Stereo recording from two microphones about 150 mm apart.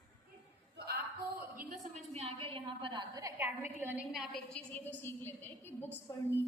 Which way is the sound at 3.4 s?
15° right (ahead or behind).